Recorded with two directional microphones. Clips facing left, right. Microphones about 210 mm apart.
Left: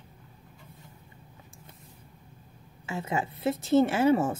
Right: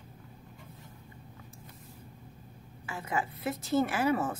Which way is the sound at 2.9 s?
25° left (ahead or behind).